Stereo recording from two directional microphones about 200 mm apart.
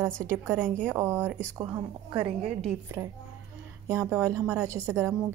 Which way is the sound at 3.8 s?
15° right (ahead or behind).